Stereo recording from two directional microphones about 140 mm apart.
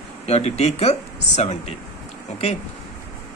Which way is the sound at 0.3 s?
50° left (ahead or behind).